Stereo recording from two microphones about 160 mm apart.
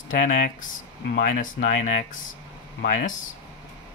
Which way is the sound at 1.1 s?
55° left (ahead or behind).